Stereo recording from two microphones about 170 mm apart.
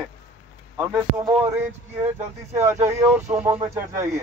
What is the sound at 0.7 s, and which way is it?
Speech, 15° right (ahead or behind).